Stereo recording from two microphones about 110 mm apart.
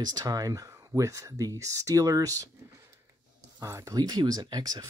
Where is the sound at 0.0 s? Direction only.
35° right (ahead or behind).